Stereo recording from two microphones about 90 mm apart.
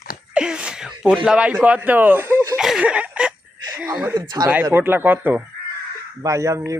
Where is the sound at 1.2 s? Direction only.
15° right (ahead or behind); by 2.6 s 30° right (ahead or behind).